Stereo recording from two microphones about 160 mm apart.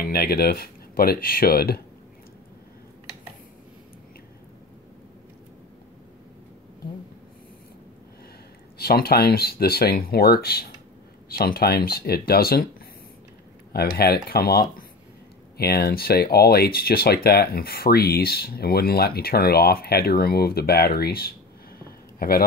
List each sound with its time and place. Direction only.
0.0 s speech: 70° left (ahead or behind)
8.7 s speech: 75° left (ahead or behind)
13.7 s speech: 80° left